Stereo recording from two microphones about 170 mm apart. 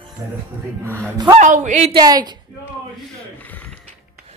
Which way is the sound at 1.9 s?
25° right (ahead or behind).